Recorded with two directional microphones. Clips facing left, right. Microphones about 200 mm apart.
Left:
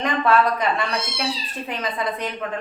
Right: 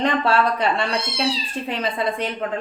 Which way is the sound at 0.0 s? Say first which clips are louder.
Even; 30° right (ahead or behind).